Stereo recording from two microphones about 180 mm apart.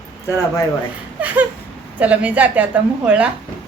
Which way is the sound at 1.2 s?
10° right (ahead or behind).